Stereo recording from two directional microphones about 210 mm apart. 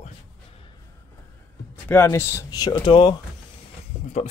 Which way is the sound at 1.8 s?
10° left (ahead or behind).